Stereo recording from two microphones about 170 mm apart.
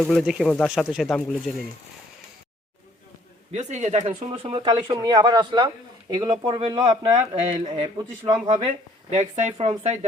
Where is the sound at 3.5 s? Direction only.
40° right (ahead or behind).